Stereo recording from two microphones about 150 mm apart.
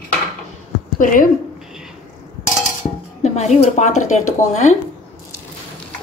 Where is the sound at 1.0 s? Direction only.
65° left (ahead or behind).